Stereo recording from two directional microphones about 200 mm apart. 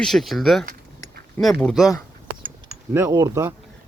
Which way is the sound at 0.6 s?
45° right (ahead or behind).